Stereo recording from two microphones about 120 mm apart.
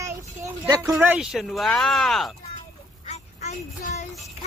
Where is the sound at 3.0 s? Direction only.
70° left (ahead or behind).